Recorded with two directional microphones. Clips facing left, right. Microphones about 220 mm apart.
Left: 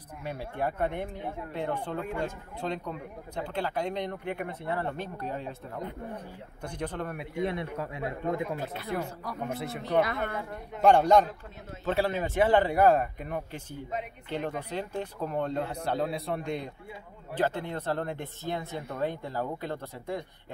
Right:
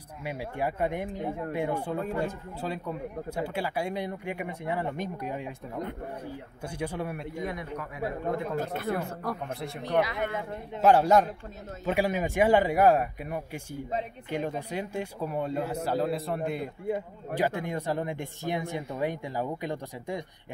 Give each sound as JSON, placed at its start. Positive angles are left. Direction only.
{"t": 0.2, "sound": "a man's voice", "side_deg": -10}
{"t": 6.6, "sound": "a man's voice", "side_deg": -10}
{"t": 7.4, "sound": "speech", "side_deg": 30}
{"t": 8.5, "sound": "speech", "side_deg": -50}
{"t": 9.5, "sound": "speech", "side_deg": 0}
{"t": 10.1, "sound": "a man's voice", "side_deg": -15}
{"t": 10.8, "sound": "a man's voice", "side_deg": -5}